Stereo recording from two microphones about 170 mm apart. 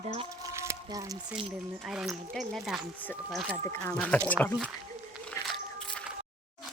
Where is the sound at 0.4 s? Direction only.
15° right (ahead or behind).